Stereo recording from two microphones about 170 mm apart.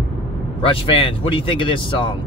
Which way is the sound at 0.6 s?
30° left (ahead or behind).